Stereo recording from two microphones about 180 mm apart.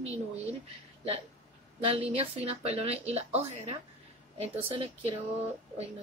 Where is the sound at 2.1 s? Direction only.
35° right (ahead or behind).